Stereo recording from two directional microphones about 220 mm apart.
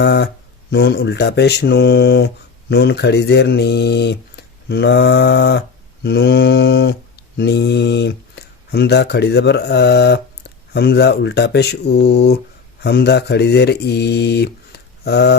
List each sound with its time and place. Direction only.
0.0 s speech: 50° left (ahead or behind)